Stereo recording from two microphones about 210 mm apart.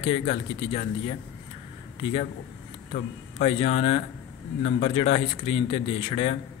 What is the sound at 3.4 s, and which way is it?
A man's voice, 30° left (ahead or behind).